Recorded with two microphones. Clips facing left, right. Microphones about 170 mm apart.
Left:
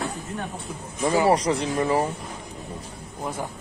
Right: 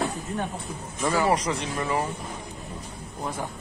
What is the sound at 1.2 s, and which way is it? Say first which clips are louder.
Speech: left 4 dB; 35° left (ahead or behind).